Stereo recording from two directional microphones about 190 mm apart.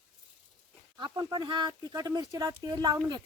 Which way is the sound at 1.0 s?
20° right (ahead or behind).